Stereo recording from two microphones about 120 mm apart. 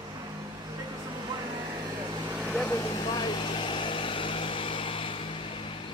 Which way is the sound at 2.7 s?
30° left (ahead or behind).